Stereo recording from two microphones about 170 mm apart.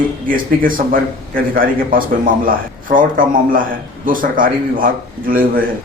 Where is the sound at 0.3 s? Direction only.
55° right (ahead or behind).